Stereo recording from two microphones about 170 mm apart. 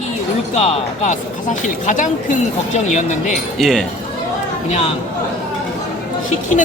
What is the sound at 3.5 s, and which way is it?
Speech, centre (ahead or behind).